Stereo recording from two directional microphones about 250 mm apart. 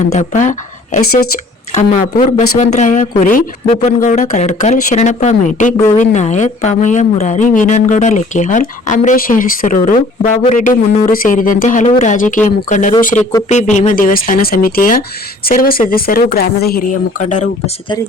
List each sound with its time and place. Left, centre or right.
0.1 s speech: left